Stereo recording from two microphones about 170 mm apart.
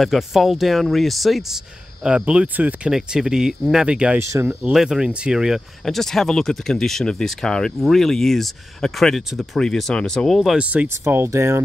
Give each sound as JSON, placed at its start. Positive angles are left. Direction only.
{"t": 0.0, "sound": "speech", "side_deg": 0}
{"t": 4.2, "sound": "speech", "side_deg": -15}
{"t": 4.7, "sound": "speech", "side_deg": -5}